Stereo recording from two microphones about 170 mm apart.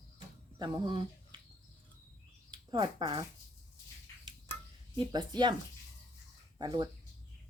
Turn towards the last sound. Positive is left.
turn(degrees=-25)  # may be behind; listen again after turning